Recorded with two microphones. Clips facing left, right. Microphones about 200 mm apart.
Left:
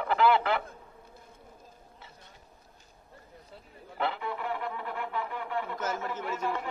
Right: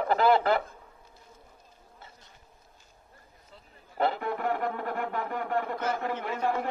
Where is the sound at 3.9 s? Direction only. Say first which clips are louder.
Right 4 dB; 40° right (ahead or behind).